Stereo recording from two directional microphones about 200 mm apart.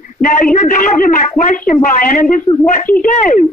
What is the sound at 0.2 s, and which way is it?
Speech, 40° left (ahead or behind).